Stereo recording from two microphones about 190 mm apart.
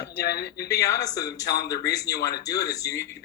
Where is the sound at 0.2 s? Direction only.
55° left (ahead or behind).